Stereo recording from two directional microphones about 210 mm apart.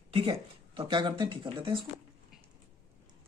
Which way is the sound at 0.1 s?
25° right (ahead or behind).